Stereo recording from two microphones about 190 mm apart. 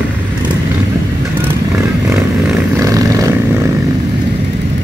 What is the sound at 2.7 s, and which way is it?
Vehicle, 15° right (ahead or behind).